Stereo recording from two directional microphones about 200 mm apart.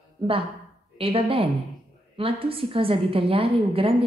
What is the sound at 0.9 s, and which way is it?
A woman's voice, 25° right (ahead or behind).